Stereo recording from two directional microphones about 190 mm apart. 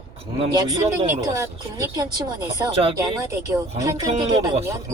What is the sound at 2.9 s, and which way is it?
Speech, 15° right (ahead or behind).